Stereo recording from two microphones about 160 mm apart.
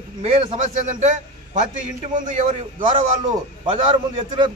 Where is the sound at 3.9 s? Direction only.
30° right (ahead or behind).